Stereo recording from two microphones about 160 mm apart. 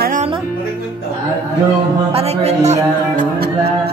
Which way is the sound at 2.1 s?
40° right (ahead or behind).